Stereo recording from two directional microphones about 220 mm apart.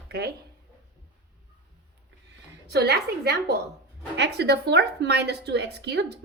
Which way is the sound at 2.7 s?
50° right (ahead or behind).